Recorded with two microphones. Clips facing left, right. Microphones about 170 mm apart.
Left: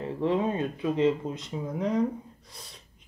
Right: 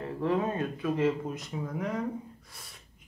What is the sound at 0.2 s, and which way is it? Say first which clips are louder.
Speech: left 2 dB; 20° left (ahead or behind).